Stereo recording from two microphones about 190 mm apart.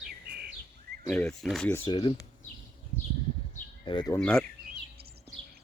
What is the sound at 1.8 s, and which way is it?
Speech, 25° left (ahead or behind).